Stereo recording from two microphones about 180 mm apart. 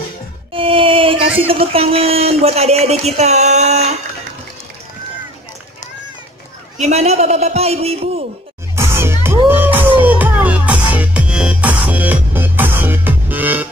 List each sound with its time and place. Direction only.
0.5 s a sound: 30° right (ahead or behind)
1.5 s speech: 30° right (ahead or behind)
6.8 s speech: 35° right (ahead or behind)
8.7 s music: 15° right (ahead or behind)